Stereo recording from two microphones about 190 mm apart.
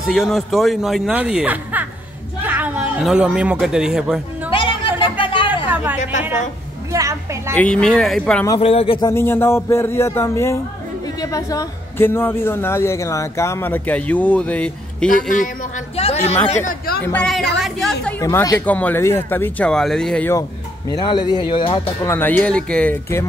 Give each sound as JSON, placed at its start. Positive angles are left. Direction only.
{"t": 0.0, "sound": "speech", "side_deg": 0}
{"t": 4.5, "sound": "music", "side_deg": 25}
{"t": 6.9, "sound": "a woman's voice", "side_deg": -15}
{"t": 7.5, "sound": "speech", "side_deg": 5}
{"t": 8.5, "sound": "speech", "side_deg": 30}
{"t": 9.1, "sound": "a woman's voice", "side_deg": 10}
{"t": 15.0, "sound": "a man's voice", "side_deg": 45}
{"t": 16.0, "sound": "a woman's voice", "side_deg": 30}
{"t": 17.0, "sound": "speech", "side_deg": 5}
{"t": 18.2, "sound": "a woman's voice", "side_deg": 15}
{"t": 20.9, "sound": "speech", "side_deg": 25}
{"t": 22.0, "sound": "a woman's voice", "side_deg": 10}